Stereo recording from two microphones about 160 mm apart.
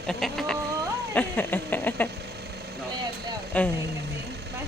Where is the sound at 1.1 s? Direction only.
10° left (ahead or behind).